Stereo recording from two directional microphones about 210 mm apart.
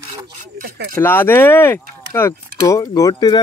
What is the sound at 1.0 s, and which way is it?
Speech, 10° left (ahead or behind).